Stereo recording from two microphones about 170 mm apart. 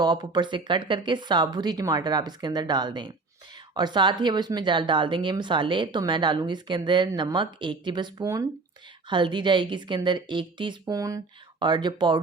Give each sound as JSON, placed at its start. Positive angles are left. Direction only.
{"t": 0.0, "sound": "speech", "side_deg": -25}